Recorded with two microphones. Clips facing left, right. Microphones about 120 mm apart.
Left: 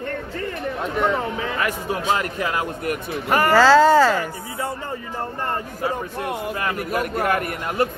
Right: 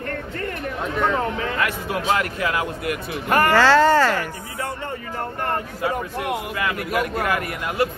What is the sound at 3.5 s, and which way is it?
Speech, 10° left (ahead or behind).